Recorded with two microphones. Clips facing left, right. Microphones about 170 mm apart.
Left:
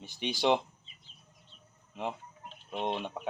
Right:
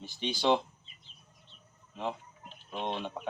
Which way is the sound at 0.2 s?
15° left (ahead or behind).